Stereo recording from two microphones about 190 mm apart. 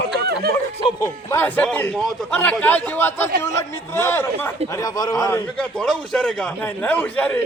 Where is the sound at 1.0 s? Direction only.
15° left (ahead or behind).